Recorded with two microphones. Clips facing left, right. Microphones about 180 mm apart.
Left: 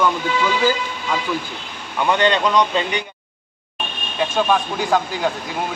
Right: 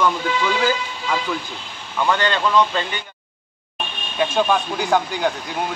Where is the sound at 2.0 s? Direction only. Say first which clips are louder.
Left 3 dB; 20° left (ahead or behind).